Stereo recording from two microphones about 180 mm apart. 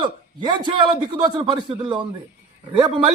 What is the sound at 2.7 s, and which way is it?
Speech, 25° right (ahead or behind).